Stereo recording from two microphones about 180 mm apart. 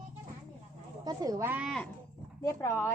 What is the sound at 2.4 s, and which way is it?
Speech, 20° left (ahead or behind).